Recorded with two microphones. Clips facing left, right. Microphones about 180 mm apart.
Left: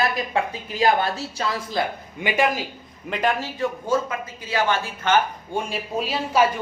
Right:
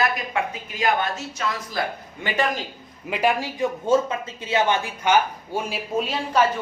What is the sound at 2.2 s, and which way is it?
Speech, 10° left (ahead or behind).